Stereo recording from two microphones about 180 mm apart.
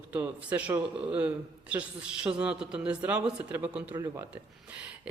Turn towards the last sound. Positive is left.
turn(degrees=-15)  # may be behind; listen again after turning